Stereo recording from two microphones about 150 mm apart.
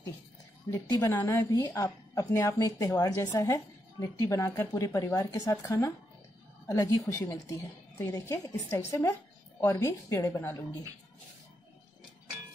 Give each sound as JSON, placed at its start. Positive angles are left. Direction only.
{"t": 0.7, "sound": "a woman's voice", "side_deg": 20}